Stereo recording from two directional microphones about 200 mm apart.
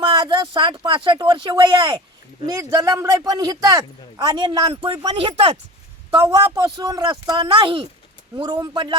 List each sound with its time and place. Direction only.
0.0 s speech: 20° right (ahead or behind)